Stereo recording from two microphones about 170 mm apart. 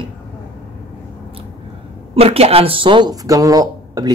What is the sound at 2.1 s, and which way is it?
Speech, 35° right (ahead or behind).